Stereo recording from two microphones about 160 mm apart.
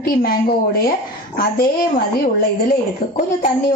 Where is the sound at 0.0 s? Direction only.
65° left (ahead or behind).